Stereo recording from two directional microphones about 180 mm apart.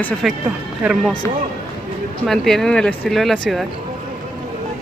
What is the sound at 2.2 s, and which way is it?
Speech, centre (ahead or behind).